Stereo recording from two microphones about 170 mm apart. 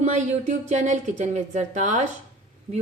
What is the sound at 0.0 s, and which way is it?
A woman's voice, 45° right (ahead or behind).